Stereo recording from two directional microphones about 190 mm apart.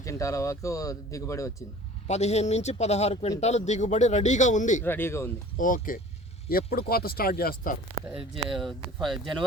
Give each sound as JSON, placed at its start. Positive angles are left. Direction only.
{"t": 0.0, "sound": "speech", "side_deg": 15}
{"t": 2.0, "sound": "a man's voice", "side_deg": 35}
{"t": 4.8, "sound": "speech", "side_deg": 10}
{"t": 5.5, "sound": "speech", "side_deg": 45}
{"t": 8.3, "sound": "speech", "side_deg": 0}